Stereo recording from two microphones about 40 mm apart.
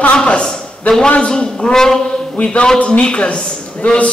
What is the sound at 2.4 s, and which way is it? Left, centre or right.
A man's voice, left.